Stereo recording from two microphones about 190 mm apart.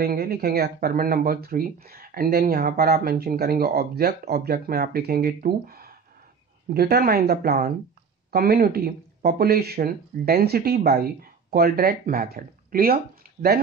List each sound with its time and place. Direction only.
0.0 s speech: 50° right (ahead or behind)